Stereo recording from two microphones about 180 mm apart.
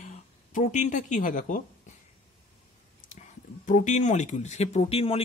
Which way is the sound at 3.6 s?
40° left (ahead or behind).